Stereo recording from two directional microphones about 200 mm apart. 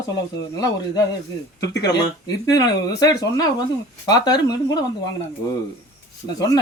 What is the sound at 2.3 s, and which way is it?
Speech, 20° left (ahead or behind).